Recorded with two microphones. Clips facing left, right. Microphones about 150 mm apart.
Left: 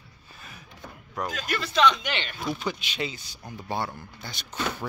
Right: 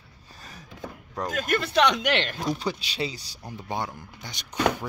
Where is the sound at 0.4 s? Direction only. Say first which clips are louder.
Right 2 dB; 35° right (ahead or behind).